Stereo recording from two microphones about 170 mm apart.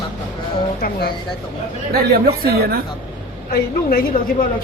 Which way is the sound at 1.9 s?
60° right (ahead or behind).